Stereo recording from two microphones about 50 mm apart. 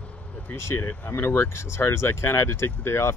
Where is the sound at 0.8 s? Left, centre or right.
Left.